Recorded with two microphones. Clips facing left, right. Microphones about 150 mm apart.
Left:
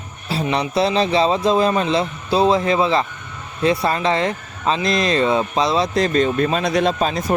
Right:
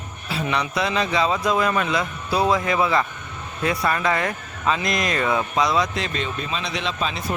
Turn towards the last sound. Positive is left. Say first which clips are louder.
# left 8 dB
turn(degrees=45)  # may be behind; listen again after turning